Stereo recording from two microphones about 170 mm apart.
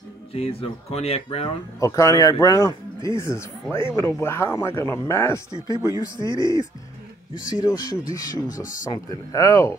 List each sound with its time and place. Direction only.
0.3 s speech: 35° left (ahead or behind)
1.8 s speech: 20° left (ahead or behind)
6.1 s speech: 25° right (ahead or behind)
7.6 s speech: 20° left (ahead or behind)